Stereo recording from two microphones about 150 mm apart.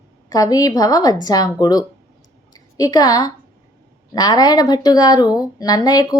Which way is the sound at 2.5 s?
25° left (ahead or behind).